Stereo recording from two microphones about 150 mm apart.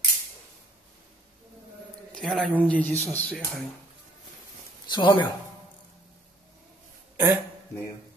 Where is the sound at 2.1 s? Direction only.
5° left (ahead or behind).